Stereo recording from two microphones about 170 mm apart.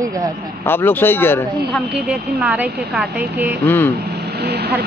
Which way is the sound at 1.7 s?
Centre (ahead or behind).